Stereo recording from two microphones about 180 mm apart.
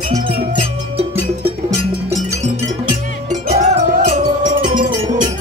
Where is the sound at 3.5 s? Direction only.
40° right (ahead or behind).